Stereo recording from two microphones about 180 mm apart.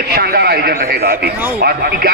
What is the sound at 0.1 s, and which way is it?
A man's voice, 60° right (ahead or behind).